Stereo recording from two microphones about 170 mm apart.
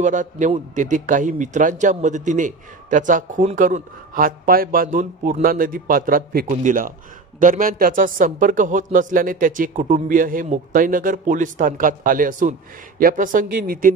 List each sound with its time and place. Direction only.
0.0 s a man's voice: 50° right (ahead or behind)